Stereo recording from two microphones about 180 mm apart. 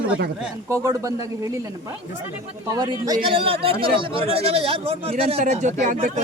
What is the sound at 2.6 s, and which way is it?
Speech, 20° right (ahead or behind).